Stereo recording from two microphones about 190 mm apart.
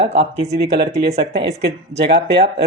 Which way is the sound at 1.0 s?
60° right (ahead or behind).